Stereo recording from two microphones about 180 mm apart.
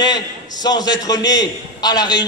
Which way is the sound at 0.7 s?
20° left (ahead or behind).